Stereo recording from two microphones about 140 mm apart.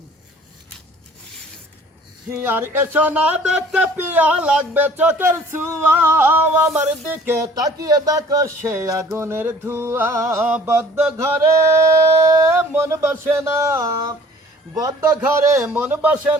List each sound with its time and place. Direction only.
2.3 s speech: 15° right (ahead or behind)
7.4 s singing: 25° right (ahead or behind)
9.1 s speech: 20° right (ahead or behind)
11.2 s singing: 20° right (ahead or behind)